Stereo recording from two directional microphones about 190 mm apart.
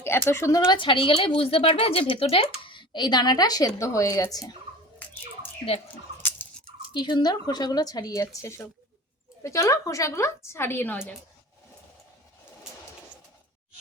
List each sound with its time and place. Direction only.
0.3 s a woman's voice: 15° left (ahead or behind)
0.7 s a woman's voice: 25° left (ahead or behind)
6.9 s a woman's voice: 25° left (ahead or behind)